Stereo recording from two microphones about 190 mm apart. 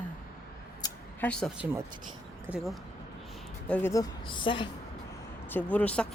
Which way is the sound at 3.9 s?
20° left (ahead or behind).